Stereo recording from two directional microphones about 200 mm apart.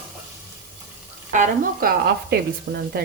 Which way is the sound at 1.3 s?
40° right (ahead or behind).